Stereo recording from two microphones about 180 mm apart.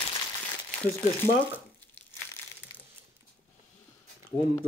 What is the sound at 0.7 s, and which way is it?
Speech, 15° left (ahead or behind).